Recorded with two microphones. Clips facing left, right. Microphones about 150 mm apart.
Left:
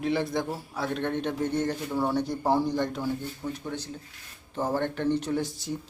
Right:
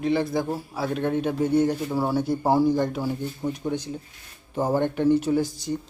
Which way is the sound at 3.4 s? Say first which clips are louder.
Right 9 dB; 20° right (ahead or behind).